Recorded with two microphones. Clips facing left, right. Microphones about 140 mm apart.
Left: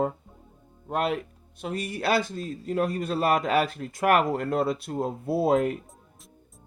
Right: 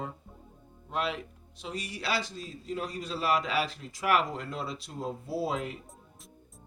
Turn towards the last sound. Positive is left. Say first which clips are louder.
# left 9 dB
turn(degrees=50)  # may be behind; listen again after turning